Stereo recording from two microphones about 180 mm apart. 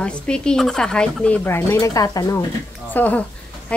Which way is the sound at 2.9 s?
10° left (ahead or behind).